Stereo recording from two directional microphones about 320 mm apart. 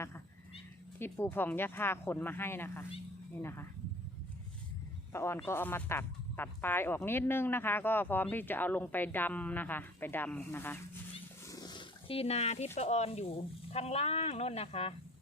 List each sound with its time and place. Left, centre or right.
0.0 s speech: centre
5.1 s speech: centre
11.4 s roaring cats: centre
12.7 s speech: centre